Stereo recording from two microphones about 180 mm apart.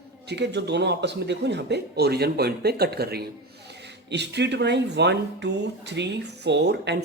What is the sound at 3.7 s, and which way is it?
A man's voice, 70° right (ahead or behind).